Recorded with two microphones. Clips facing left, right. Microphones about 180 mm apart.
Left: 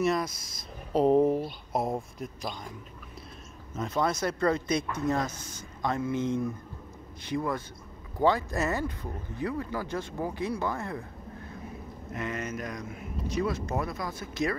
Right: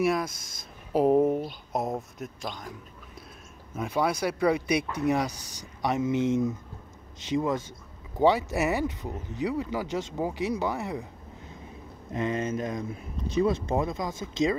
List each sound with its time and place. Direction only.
0.0 s speech: 5° right (ahead or behind)
3.7 s speech: 10° right (ahead or behind)
12.1 s speech: 25° right (ahead or behind)